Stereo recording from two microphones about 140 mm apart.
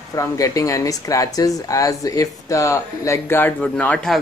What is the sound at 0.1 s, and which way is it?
A man's voice, 25° left (ahead or behind).